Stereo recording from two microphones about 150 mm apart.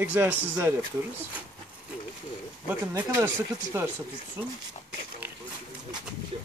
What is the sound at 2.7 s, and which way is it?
A man's voice, 15° right (ahead or behind).